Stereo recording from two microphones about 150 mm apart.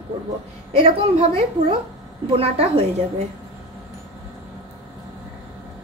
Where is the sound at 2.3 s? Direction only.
40° right (ahead or behind).